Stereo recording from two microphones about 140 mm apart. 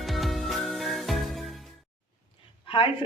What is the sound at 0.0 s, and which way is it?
Music, centre (ahead or behind).